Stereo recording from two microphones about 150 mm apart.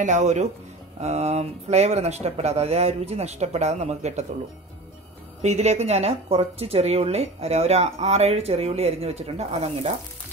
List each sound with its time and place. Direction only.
0.0 s speech: 50° right (ahead or behind)
5.4 s speech: 50° right (ahead or behind)